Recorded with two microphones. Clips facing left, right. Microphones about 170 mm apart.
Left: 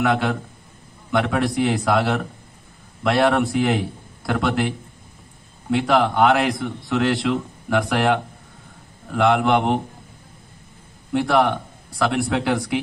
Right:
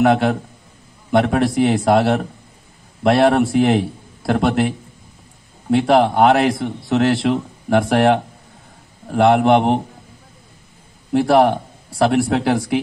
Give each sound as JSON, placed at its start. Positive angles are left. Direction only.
{"t": 0.0, "sound": "a man's voice", "side_deg": -30}
{"t": 11.1, "sound": "a man's voice", "side_deg": -35}